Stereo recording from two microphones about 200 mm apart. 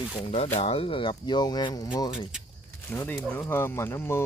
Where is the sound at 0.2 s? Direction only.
30° left (ahead or behind).